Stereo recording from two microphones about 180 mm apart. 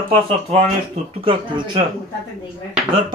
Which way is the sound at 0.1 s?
30° right (ahead or behind).